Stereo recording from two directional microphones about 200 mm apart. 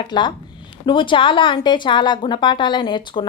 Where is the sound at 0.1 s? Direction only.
25° left (ahead or behind).